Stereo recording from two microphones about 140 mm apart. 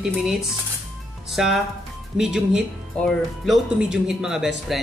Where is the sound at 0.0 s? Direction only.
5° right (ahead or behind).